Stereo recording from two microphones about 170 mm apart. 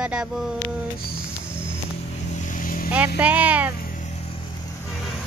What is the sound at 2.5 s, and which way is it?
Vehicle, 55° left (ahead or behind).